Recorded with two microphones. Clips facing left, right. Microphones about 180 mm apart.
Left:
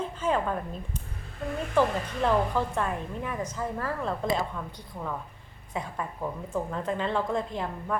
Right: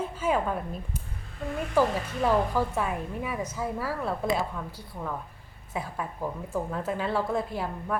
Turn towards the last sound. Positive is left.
turn(degrees=-5)  # may be behind; listen again after turning